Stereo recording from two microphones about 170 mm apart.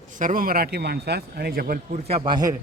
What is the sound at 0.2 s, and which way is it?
Speech, 50° right (ahead or behind).